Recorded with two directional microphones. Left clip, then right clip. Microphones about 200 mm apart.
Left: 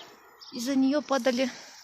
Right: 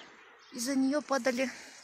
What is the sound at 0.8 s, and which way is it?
Speech, 10° right (ahead or behind).